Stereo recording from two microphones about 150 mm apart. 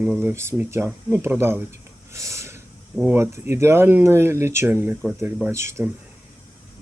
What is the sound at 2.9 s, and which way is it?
Speech, 10° right (ahead or behind).